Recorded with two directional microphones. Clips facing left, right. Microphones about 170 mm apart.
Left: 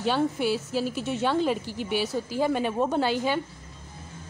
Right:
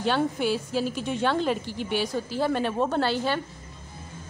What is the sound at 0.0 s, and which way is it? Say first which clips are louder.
A woman's voice: even; 5° left (ahead or behind).